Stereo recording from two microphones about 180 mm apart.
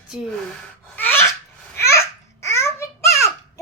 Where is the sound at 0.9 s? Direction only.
10° left (ahead or behind).